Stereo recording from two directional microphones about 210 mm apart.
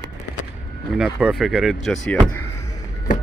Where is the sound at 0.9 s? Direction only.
5° right (ahead or behind).